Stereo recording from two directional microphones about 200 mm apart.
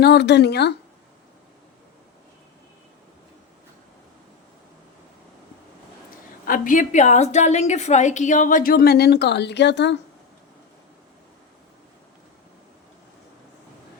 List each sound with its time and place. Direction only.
0.0 s speech: 55° left (ahead or behind)
6.4 s a woman's voice: 45° left (ahead or behind); by 9.9 s 60° left (ahead or behind)